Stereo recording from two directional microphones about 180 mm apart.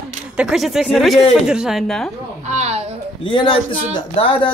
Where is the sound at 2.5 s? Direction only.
40° right (ahead or behind).